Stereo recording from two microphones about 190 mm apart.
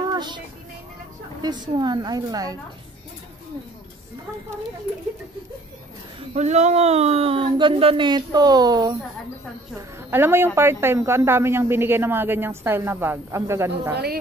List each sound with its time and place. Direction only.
0.1 s child singing: 25° right (ahead or behind)
1.4 s speech: 20° right (ahead or behind)
6.3 s a woman's voice: 35° right (ahead or behind); by 13.9 s 15° right (ahead or behind)